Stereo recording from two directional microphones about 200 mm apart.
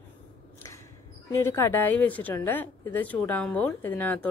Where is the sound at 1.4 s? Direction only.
10° left (ahead or behind).